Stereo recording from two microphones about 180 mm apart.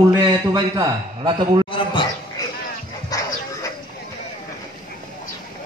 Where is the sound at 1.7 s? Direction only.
25° left (ahead or behind).